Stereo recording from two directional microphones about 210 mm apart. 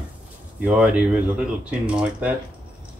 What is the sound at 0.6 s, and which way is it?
Speech, 5° right (ahead or behind).